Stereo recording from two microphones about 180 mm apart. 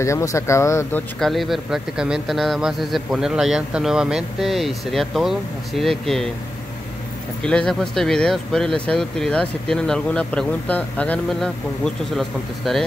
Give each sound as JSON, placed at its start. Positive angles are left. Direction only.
{"t": 0.0, "sound": "speech", "side_deg": 15}
{"t": 1.2, "sound": "speech", "side_deg": 0}
{"t": 7.4, "sound": "speech", "side_deg": 5}